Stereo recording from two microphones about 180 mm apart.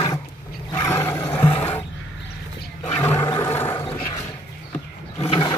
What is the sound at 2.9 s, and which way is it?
Roar, 15° left (ahead or behind).